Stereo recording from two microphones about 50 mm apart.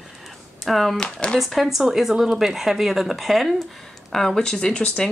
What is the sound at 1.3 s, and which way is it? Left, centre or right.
Speech, centre.